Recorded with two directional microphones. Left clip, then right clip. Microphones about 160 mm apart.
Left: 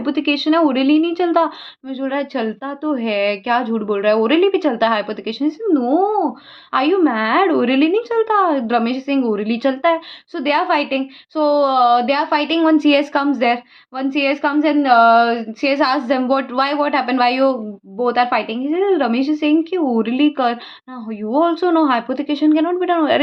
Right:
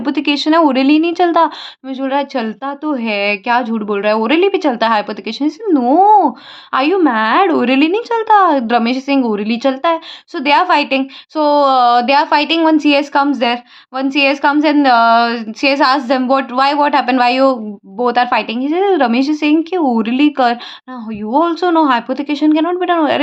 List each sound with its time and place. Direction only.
0.0 s a woman's voice: 30° right (ahead or behind)
6.7 s a woman's voice: 25° right (ahead or behind)
10.3 s speech: 30° right (ahead or behind)
15.7 s a woman's voice: 25° right (ahead or behind)